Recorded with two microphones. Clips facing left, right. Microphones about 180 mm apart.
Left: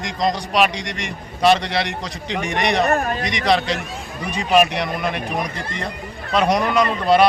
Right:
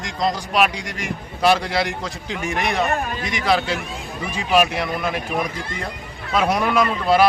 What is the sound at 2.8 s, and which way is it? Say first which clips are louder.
Speech: left 4 dB; 45° left (ahead or behind).